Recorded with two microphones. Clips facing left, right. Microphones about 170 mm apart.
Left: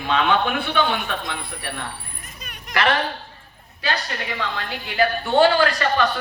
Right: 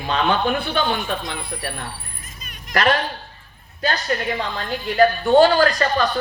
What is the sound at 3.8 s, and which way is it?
A woman's voice, 45° right (ahead or behind).